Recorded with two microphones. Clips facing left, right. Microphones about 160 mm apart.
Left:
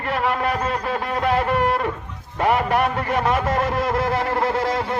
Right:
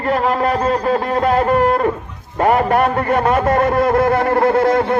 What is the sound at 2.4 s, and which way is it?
A man's voice, 45° right (ahead or behind).